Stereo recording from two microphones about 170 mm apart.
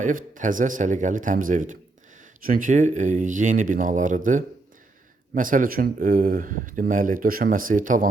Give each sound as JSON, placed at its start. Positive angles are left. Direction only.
{"t": 0.0, "sound": "speech", "side_deg": -50}